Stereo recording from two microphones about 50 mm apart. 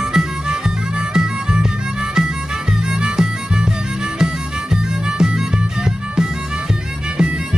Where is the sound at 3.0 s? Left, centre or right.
Centre.